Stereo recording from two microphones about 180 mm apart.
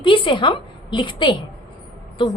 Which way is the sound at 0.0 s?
25° left (ahead or behind).